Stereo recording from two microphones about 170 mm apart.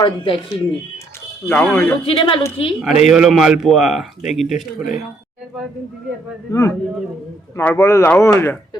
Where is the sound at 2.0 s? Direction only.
30° left (ahead or behind).